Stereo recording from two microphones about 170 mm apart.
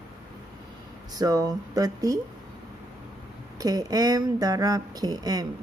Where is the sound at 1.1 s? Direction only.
20° right (ahead or behind).